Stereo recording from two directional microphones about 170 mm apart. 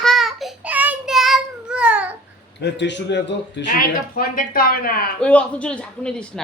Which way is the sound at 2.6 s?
90° left.